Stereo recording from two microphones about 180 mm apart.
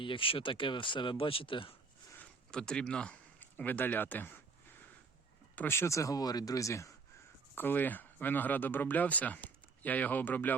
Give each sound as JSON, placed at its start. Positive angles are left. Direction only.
{"t": 0.0, "sound": "speech", "side_deg": 30}
{"t": 2.1, "sound": "speech", "side_deg": 5}
{"t": 5.5, "sound": "speech", "side_deg": 15}